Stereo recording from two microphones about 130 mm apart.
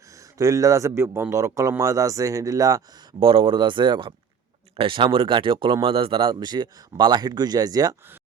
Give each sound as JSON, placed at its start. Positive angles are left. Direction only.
{"t": 0.1, "sound": "a man's voice", "side_deg": -25}